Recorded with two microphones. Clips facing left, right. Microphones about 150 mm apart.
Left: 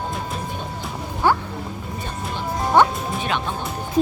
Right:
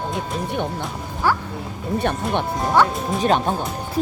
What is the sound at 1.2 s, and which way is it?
Speech, 20° left (ahead or behind).